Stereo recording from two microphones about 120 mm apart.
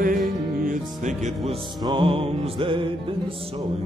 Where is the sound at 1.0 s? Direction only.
70° right (ahead or behind).